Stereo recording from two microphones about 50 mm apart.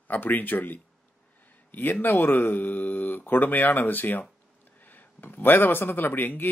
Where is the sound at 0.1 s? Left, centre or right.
Left.